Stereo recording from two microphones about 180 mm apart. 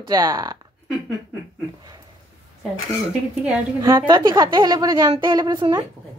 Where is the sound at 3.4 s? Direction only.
10° right (ahead or behind).